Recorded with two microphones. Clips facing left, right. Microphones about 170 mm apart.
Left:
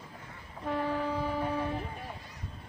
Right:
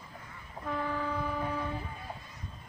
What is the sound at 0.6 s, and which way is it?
Vehicle, 25° left (ahead or behind).